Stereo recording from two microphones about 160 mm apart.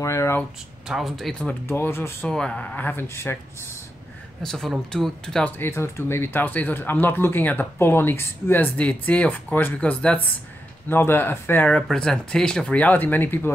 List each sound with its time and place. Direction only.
0.0 s speech: 15° left (ahead or behind)
0.8 s speech: centre (ahead or behind)
1.7 s speech: 15° left (ahead or behind)
4.4 s speech: 5° left (ahead or behind)